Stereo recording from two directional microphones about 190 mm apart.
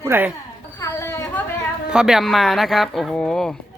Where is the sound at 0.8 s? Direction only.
15° left (ahead or behind).